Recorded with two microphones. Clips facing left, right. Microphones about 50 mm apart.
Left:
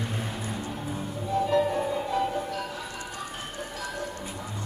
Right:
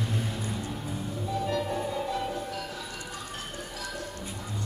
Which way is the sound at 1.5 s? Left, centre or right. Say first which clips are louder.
Left 6 dB; centre.